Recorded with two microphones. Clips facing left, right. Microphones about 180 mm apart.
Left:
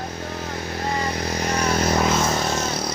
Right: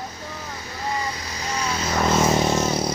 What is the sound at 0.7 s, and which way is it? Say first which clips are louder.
Vehicle: left 2 dB; 70° left (ahead or behind).